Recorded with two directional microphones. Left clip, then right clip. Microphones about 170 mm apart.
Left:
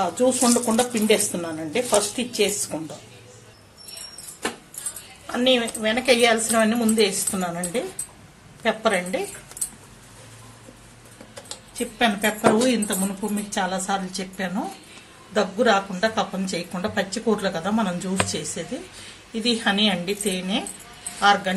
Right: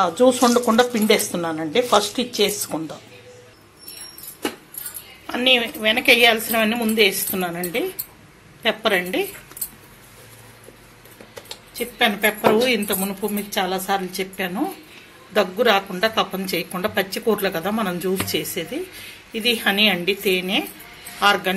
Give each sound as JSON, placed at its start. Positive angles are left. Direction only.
{"t": 0.0, "sound": "speech", "side_deg": -10}
{"t": 5.2, "sound": "speech", "side_deg": -10}
{"t": 8.6, "sound": "speech", "side_deg": -10}
{"t": 12.0, "sound": "speech", "side_deg": -10}